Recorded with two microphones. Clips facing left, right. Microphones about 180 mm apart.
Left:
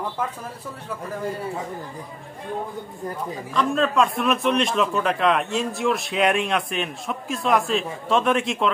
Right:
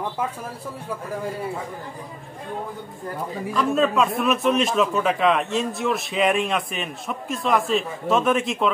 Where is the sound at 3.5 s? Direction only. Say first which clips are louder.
Even; 5° right (ahead or behind).